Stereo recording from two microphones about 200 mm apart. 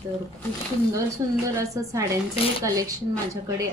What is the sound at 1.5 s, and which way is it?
A woman's voice, 15° right (ahead or behind).